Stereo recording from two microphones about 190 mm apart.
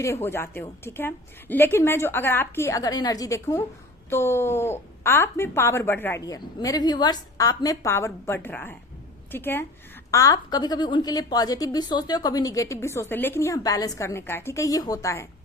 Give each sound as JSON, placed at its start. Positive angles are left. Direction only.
{"t": 0.0, "sound": "speech", "side_deg": 15}